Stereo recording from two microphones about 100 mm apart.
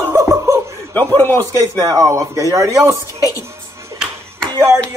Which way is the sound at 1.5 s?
35° right (ahead or behind).